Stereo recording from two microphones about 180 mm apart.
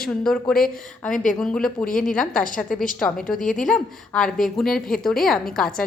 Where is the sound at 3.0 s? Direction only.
Centre (ahead or behind).